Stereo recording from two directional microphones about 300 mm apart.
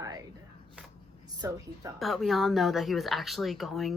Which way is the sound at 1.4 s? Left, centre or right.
Centre.